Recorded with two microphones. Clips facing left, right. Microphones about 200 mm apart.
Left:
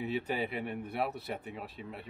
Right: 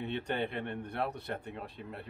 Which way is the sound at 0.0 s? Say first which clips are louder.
Left 1 dB; 5° left (ahead or behind).